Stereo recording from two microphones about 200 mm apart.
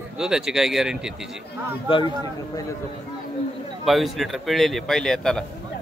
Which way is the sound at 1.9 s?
25° left (ahead or behind).